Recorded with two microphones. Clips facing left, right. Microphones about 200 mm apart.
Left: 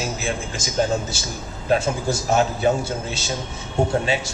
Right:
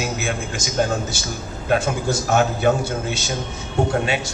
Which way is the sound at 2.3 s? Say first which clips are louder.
Right 1 dB; 30° left (ahead or behind).